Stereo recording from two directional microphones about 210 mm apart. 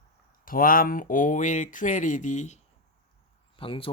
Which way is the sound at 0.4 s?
40° left (ahead or behind).